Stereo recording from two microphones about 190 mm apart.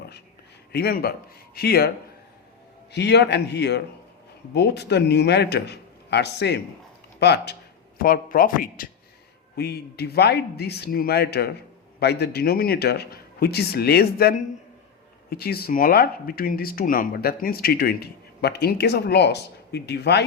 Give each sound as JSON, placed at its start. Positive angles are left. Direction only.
{"t": 0.7, "sound": "a man's voice", "side_deg": 55}
{"t": 2.9, "sound": "a man's voice", "side_deg": 60}
{"t": 7.9, "sound": "speech", "side_deg": 50}
{"t": 9.6, "sound": "a man's voice", "side_deg": 60}